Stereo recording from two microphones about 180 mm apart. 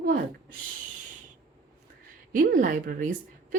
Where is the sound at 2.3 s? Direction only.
50° right (ahead or behind).